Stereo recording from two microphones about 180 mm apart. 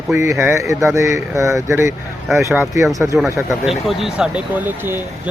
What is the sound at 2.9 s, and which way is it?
Speech, 15° right (ahead or behind).